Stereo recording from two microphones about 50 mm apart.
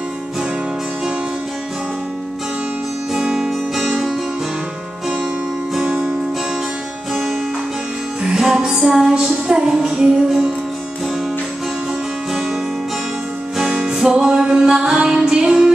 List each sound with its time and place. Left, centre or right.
3.1 s music: centre
3.4 s music: centre
8.2 s music: centre
13.7 s music: centre